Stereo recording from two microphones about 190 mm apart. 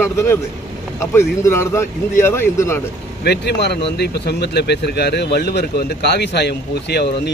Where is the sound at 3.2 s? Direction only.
60° left (ahead or behind).